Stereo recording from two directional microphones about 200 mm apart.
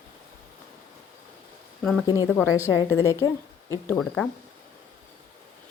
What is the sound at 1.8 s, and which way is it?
Speech, 5° left (ahead or behind).